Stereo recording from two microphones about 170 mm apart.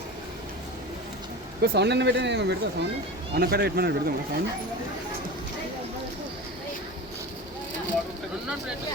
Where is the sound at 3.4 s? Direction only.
65° right (ahead or behind).